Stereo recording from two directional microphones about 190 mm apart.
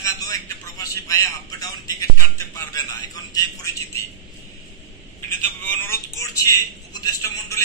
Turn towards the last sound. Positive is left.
turn(degrees=20)  # may be behind; listen again after turning